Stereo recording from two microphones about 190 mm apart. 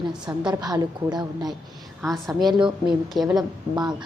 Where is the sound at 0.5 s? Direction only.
20° right (ahead or behind).